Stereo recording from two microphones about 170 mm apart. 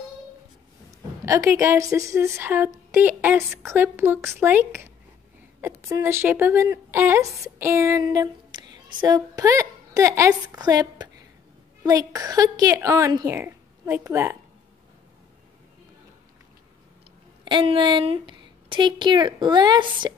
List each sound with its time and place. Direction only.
1.2 s a woman's voice: 20° right (ahead or behind)
17.5 s a woman's voice: 30° right (ahead or behind)